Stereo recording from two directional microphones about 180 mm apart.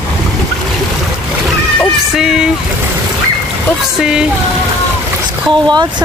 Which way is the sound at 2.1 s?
Centre (ahead or behind).